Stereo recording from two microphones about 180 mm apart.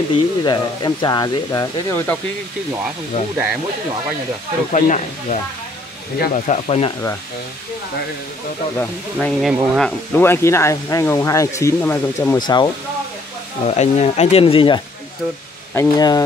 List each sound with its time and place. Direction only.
0.1 s speech: 25° left (ahead or behind)
4.7 s speech: 45° left (ahead or behind)
8.7 s speech: 5° left (ahead or behind)
12.4 s speech: 25° left (ahead or behind)
13.7 s speech: 40° left (ahead or behind)
15.7 s speech: 20° left (ahead or behind)